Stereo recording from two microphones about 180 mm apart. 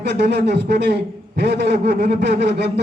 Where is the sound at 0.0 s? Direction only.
65° right (ahead or behind).